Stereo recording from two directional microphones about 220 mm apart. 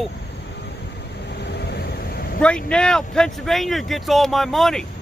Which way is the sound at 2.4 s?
5° left (ahead or behind).